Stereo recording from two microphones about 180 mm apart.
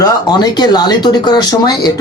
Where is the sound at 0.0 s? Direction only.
25° left (ahead or behind).